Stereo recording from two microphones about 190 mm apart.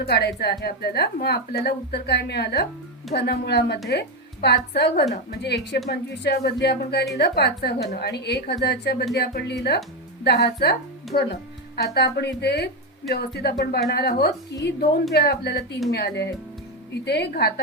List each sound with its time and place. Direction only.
0.1 s speech: 60° left (ahead or behind)